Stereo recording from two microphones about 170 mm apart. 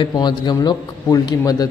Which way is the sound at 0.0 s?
25° left (ahead or behind).